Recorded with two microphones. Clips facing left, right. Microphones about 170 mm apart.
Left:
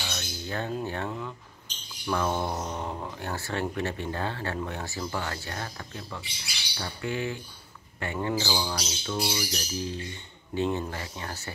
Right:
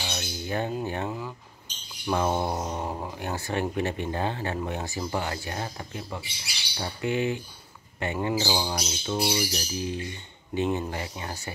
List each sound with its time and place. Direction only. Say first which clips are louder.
0.0 s squawk: right 2 dB; 20° right (ahead or behind)
0.8 s speech: right 2 dB; 15° right (ahead or behind)
2.0 s speech: right 2 dB; 25° right (ahead or behind)